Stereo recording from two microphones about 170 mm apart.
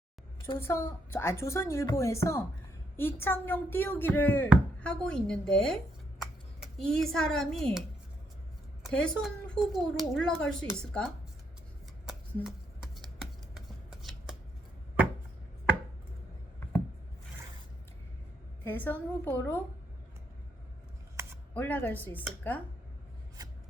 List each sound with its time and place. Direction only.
0.6 s speech: 15° left (ahead or behind)
12.4 s shuffling cards: 5° right (ahead or behind)
18.6 s speech: 10° left (ahead or behind)
21.2 s a sound: 15° right (ahead or behind)
21.5 s speech: 10° left (ahead or behind)